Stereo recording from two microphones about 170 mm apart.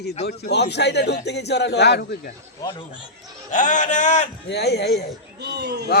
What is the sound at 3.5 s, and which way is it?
Speech, 45° left (ahead or behind).